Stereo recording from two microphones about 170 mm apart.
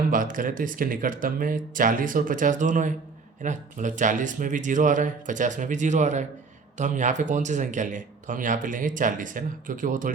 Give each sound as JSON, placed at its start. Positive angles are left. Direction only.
{"t": 0.1, "sound": "speech", "side_deg": -50}